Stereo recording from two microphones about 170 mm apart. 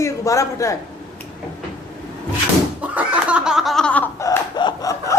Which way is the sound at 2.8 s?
10° right (ahead or behind).